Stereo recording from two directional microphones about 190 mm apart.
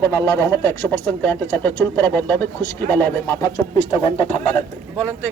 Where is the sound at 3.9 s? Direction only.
25° left (ahead or behind).